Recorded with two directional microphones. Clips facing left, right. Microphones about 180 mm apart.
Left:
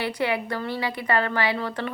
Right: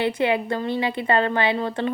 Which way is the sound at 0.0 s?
25° right (ahead or behind).